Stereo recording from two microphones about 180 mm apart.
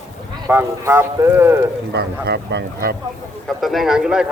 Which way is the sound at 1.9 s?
70° right (ahead or behind).